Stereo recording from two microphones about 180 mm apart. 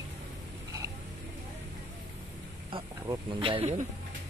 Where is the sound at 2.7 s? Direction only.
25° right (ahead or behind).